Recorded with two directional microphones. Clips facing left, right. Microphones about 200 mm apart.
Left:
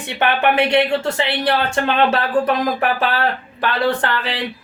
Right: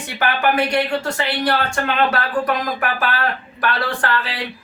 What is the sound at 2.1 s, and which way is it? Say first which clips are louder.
Speech: left 3 dB; 25° left (ahead or behind).